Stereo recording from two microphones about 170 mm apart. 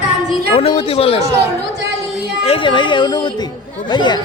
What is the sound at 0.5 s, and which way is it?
Speech, 30° left (ahead or behind).